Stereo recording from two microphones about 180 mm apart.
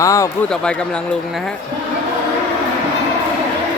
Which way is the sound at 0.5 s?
5° left (ahead or behind).